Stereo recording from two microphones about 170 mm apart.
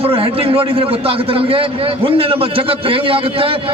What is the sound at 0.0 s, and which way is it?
A man's voice, 35° right (ahead or behind).